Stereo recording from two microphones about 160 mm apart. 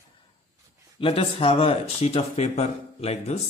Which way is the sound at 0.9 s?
35° left (ahead or behind).